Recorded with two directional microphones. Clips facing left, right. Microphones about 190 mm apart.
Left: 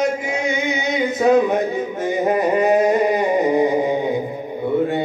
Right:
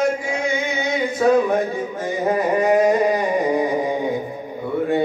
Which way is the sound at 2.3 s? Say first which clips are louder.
Left 1 dB; 20° left (ahead or behind).